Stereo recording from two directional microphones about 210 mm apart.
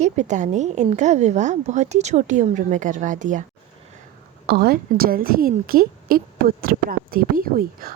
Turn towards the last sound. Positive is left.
turn(degrees=-45)  # may be behind; listen again after turning